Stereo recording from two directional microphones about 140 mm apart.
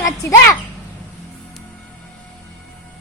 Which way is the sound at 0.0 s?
20° left (ahead or behind).